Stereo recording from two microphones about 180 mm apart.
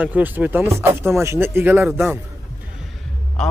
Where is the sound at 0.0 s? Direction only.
10° right (ahead or behind).